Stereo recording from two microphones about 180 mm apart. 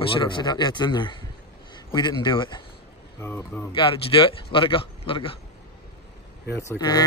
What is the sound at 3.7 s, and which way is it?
Speech, 30° left (ahead or behind).